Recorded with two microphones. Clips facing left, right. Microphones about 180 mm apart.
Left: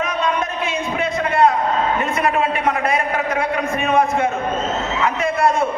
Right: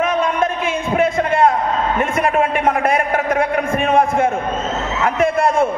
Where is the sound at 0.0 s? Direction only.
50° right (ahead or behind).